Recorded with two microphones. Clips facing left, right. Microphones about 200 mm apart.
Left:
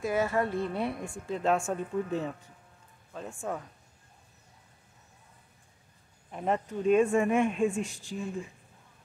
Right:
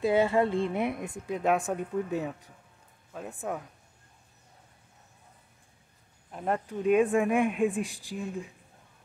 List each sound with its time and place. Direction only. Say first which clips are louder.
0.0 s a woman's voice: right 4 dB; 25° right (ahead or behind)
3.4 s speech: right 1 dB; 10° right (ahead or behind)
6.3 s speech: left 1 dB; centre (ahead or behind); by 8.3 s 15° right (ahead or behind)